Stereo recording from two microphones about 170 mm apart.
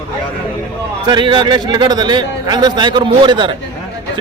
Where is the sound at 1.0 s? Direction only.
25° right (ahead or behind).